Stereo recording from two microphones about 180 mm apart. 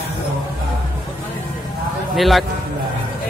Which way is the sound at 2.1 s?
Centre (ahead or behind).